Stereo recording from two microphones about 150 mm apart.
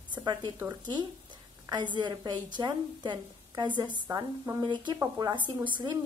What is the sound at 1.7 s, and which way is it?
A woman's voice, 30° right (ahead or behind).